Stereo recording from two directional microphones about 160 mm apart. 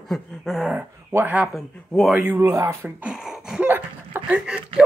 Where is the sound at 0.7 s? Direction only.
10° right (ahead or behind).